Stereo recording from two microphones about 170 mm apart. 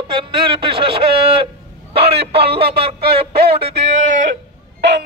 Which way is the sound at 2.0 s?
75° right (ahead or behind).